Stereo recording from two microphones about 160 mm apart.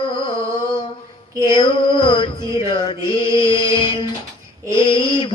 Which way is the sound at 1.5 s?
30° left (ahead or behind).